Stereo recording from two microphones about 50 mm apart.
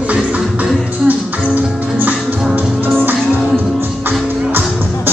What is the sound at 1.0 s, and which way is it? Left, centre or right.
Music, right.